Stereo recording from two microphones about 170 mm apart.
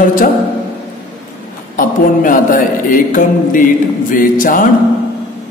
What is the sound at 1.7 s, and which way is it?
Speech, 50° left (ahead or behind).